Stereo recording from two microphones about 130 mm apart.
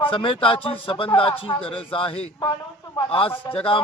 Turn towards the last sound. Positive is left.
turn(degrees=45)  # may be behind; listen again after turning